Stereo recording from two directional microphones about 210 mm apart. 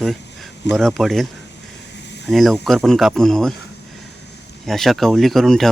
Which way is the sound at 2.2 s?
Centre (ahead or behind).